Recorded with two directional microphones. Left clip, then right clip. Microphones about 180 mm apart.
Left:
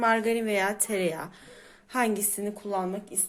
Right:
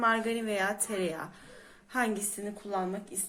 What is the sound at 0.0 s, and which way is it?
Speech, 40° left (ahead or behind).